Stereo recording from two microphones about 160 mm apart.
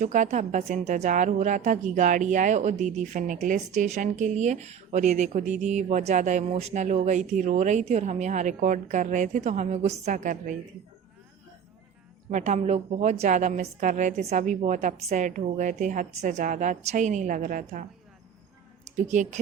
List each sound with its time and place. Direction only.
0.0 s a woman's voice: 50° right (ahead or behind)
12.3 s a woman's voice: 45° right (ahead or behind)
18.9 s a woman's voice: 50° right (ahead or behind)